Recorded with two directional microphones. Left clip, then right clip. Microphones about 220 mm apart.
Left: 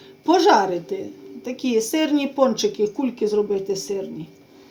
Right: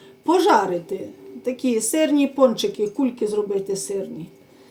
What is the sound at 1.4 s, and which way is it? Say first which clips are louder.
Speech: even; 20° left (ahead or behind).